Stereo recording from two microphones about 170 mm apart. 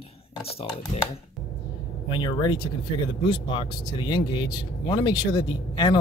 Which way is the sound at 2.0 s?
25° left (ahead or behind).